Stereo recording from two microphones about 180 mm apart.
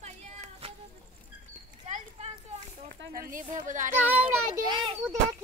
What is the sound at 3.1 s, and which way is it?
Speech, 50° right (ahead or behind).